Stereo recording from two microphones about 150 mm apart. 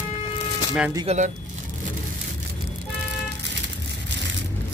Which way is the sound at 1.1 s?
45° right (ahead or behind).